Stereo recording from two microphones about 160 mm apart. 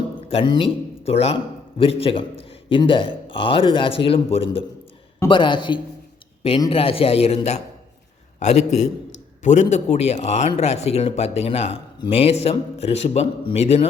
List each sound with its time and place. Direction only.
0.3 s a man's voice: 30° left (ahead or behind)